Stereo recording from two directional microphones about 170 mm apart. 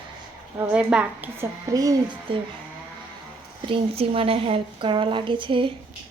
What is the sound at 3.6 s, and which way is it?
Speech, 30° right (ahead or behind).